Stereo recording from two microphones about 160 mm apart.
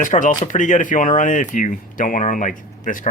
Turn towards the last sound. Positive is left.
turn(degrees=55)  # may be behind; listen again after turning